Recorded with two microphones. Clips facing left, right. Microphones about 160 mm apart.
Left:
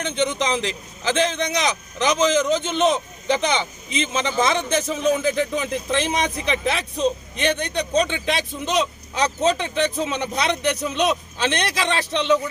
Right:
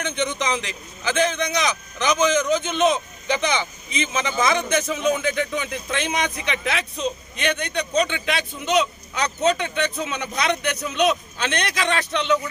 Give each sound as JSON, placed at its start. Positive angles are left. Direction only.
{"t": 0.0, "sound": "a man's voice", "side_deg": 30}